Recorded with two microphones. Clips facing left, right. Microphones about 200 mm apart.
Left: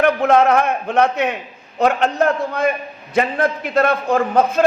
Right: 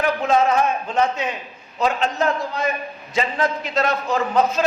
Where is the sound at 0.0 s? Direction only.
60° left (ahead or behind).